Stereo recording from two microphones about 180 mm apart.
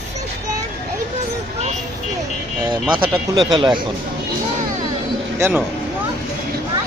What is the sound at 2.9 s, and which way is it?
Speech, 25° right (ahead or behind).